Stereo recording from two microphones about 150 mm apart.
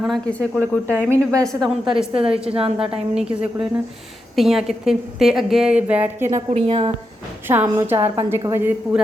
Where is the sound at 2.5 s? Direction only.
40° right (ahead or behind).